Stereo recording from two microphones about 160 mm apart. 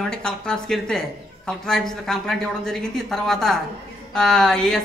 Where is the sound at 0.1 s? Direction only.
5° left (ahead or behind).